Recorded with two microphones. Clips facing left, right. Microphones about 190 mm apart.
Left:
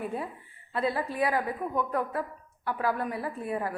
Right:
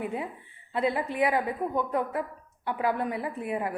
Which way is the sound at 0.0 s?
20° right (ahead or behind).